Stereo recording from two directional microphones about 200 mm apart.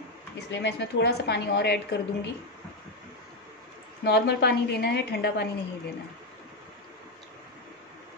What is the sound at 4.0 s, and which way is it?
A woman's voice, 55° left (ahead or behind).